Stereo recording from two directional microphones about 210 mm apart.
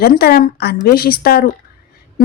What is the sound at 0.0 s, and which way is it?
Speech, 45° left (ahead or behind).